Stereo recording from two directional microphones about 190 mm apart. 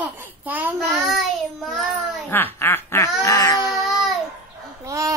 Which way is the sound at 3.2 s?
15° left (ahead or behind).